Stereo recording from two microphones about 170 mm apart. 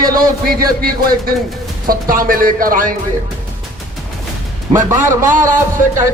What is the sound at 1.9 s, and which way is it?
A man's voice, 55° right (ahead or behind).